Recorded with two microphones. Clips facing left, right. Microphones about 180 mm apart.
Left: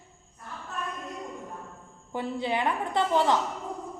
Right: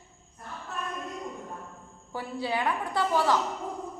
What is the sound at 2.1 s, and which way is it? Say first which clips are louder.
A woman's voice: left 2 dB; 20° left (ahead or behind).